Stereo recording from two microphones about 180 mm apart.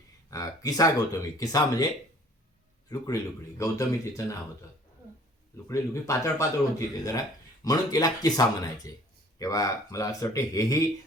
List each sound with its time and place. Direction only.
0.3 s speech: 20° left (ahead or behind)
3.6 s speech: 15° left (ahead or behind)
5.6 s speech: 15° left (ahead or behind)